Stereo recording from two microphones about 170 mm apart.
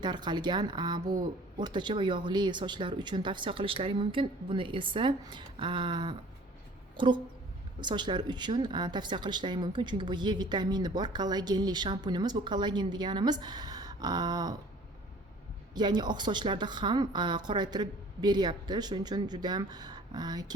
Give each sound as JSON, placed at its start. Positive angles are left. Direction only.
{"t": 0.0, "sound": "speech", "side_deg": -25}
{"t": 6.9, "sound": "a sound", "side_deg": -30}
{"t": 7.8, "sound": "speech", "side_deg": -25}
{"t": 15.7, "sound": "speech", "side_deg": -25}